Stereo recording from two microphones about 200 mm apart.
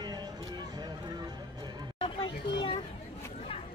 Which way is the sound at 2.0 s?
25° left (ahead or behind).